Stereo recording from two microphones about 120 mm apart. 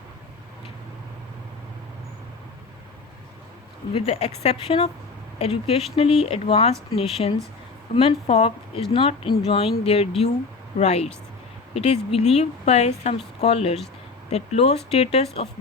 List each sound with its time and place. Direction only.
3.9 s a woman's voice: 60° left (ahead or behind)